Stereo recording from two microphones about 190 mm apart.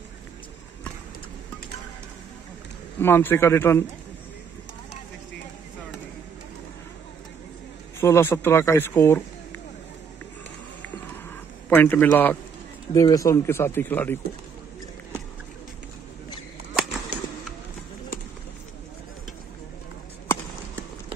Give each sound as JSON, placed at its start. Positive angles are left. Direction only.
{"t": 3.0, "sound": "speech", "side_deg": 10}
{"t": 8.0, "sound": "speech", "side_deg": 15}
{"t": 11.7, "sound": "speech", "side_deg": 10}